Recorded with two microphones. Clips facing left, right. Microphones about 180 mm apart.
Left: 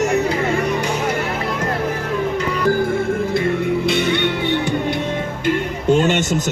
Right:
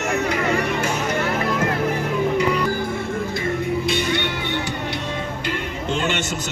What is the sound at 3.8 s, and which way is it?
Music, 60° left (ahead or behind).